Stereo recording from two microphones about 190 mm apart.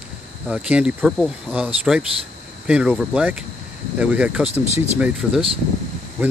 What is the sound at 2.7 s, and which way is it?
Speech, 5° right (ahead or behind).